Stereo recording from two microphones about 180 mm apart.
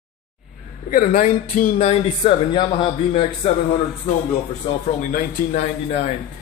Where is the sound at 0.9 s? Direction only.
45° left (ahead or behind).